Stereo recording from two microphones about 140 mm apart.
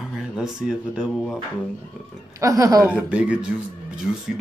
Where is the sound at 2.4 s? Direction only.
25° right (ahead or behind).